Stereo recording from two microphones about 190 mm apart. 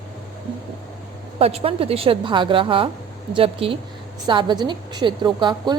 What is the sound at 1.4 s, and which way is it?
A woman's voice, 30° right (ahead or behind).